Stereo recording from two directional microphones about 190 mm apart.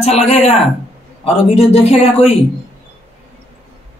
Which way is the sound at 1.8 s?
35° left (ahead or behind).